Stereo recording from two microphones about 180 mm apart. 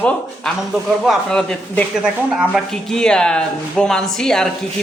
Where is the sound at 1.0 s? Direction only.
5° left (ahead or behind).